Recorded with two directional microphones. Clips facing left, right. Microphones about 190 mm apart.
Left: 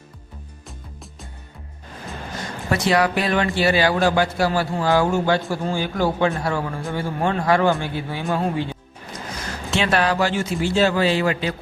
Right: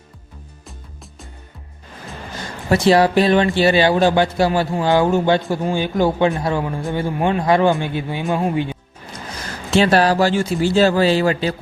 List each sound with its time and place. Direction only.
2.6 s a man's voice: 30° right (ahead or behind); by 8.8 s 15° right (ahead or behind)
9.7 s a man's voice: 35° right (ahead or behind)